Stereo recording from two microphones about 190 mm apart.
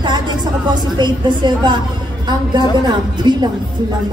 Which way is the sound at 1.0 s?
25° right (ahead or behind).